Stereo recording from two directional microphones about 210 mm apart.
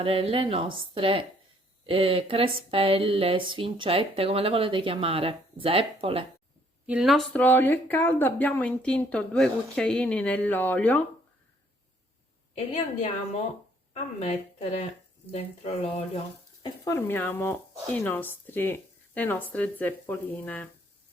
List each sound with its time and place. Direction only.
0.0 s speech: 25° right (ahead or behind)
6.8 s speech: 5° right (ahead or behind)
13.9 s speech: 30° left (ahead or behind)
16.8 s speech: 10° left (ahead or behind)